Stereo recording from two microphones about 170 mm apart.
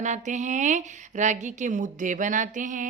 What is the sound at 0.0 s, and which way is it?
A woman's voice, 45° right (ahead or behind).